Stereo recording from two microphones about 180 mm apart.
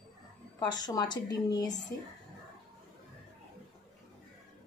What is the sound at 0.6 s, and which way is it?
A woman's voice, 25° left (ahead or behind).